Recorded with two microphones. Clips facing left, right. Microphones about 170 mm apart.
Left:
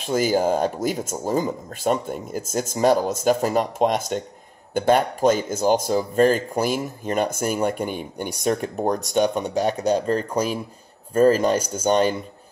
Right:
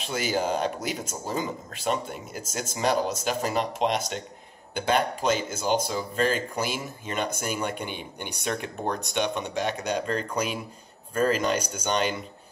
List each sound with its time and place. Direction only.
0.1 s speech: 40° left (ahead or behind)